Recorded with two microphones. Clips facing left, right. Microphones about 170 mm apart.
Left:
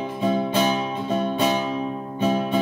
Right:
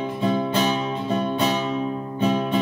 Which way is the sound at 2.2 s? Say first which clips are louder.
Even; 5° left (ahead or behind).